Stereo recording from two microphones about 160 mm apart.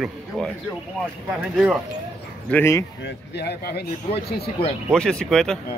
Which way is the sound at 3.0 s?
90° left.